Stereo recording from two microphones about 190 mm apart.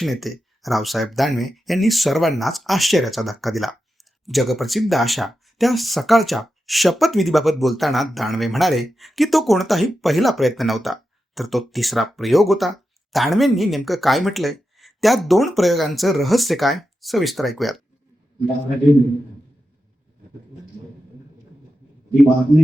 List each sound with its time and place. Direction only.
0.0 s speech: centre (ahead or behind)